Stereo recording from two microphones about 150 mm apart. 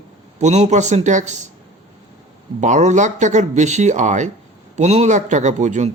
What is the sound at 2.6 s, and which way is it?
Speech, 55° right (ahead or behind).